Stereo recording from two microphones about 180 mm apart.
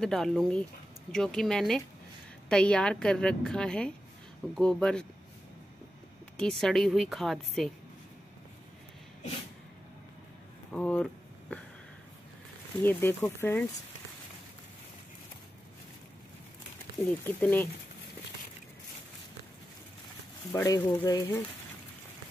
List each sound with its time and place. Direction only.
0.0 s a woman's voice: centre (ahead or behind)
6.3 s a woman's voice: 5° left (ahead or behind)
10.7 s a woman's voice: 5° left (ahead or behind)
12.8 s speech: 10° left (ahead or behind)
17.2 s speech: 10° left (ahead or behind)
20.5 s speech: 20° left (ahead or behind)